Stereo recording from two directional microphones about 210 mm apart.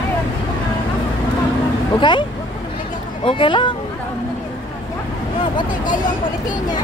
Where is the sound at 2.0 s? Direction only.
20° left (ahead or behind).